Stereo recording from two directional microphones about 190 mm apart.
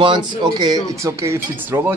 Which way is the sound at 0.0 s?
25° right (ahead or behind).